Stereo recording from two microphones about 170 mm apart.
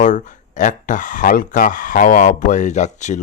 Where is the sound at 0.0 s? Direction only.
45° left (ahead or behind).